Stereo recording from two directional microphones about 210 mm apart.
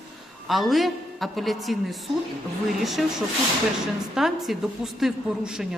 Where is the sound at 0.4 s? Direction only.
Centre (ahead or behind).